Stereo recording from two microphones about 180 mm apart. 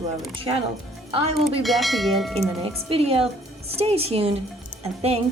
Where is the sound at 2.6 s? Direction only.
30° right (ahead or behind).